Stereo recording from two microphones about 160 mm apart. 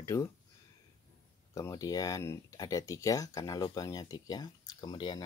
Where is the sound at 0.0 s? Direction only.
20° left (ahead or behind).